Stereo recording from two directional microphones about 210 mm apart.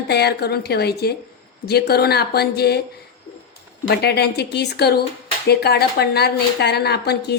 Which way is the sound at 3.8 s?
50° left (ahead or behind).